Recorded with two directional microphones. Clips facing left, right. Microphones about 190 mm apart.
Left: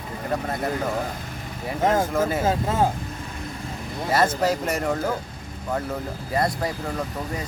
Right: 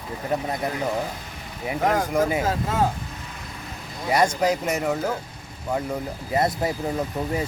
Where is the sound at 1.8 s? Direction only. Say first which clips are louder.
Left 2 dB; 25° left (ahead or behind).